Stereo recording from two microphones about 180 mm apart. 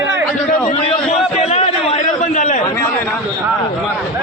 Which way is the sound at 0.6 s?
35° left (ahead or behind).